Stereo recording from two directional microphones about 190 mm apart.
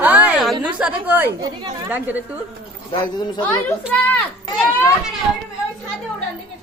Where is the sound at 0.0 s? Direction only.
10° right (ahead or behind).